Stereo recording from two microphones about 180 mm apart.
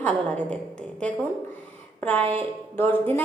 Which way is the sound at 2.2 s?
30° right (ahead or behind).